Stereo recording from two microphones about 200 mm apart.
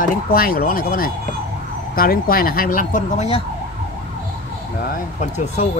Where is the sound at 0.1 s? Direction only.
45° left (ahead or behind); by 3.4 s 30° left (ahead or behind).